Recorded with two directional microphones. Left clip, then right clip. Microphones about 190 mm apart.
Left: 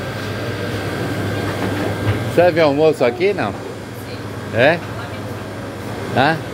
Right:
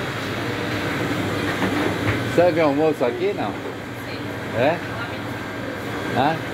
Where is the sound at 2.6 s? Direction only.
30° left (ahead or behind).